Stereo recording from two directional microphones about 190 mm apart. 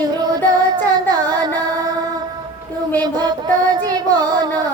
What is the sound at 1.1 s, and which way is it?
Music, 20° right (ahead or behind).